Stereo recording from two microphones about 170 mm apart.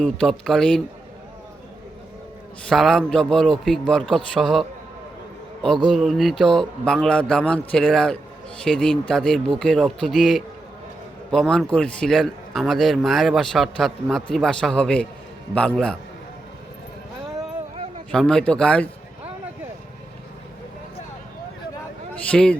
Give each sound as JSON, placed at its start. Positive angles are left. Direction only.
{"t": 0.0, "sound": "a man's voice", "side_deg": 5}
{"t": 2.6, "sound": "a man's voice", "side_deg": 5}
{"t": 5.9, "sound": "a man's voice", "side_deg": 0}
{"t": 18.1, "sound": "a man's voice", "side_deg": 5}
{"t": 22.1, "sound": "a man's voice", "side_deg": 5}